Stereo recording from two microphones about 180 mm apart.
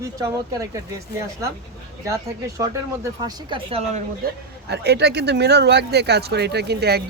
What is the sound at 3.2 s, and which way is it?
Speech, 25° right (ahead or behind).